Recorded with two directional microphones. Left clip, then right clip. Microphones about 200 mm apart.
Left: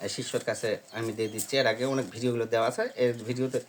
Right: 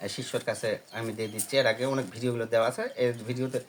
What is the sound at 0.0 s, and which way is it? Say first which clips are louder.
Speech: left 1 dB; 15° left (ahead or behind).